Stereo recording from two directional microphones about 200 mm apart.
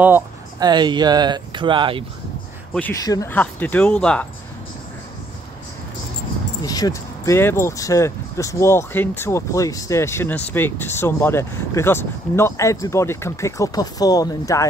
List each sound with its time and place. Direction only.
0.0 s a sound: 10° right (ahead or behind)
0.7 s speech: 20° right (ahead or behind)
3.0 s speech: 15° left (ahead or behind)
6.6 s speech: 20° left (ahead or behind)